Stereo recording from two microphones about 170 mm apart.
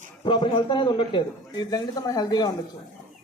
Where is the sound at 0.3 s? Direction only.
30° left (ahead or behind).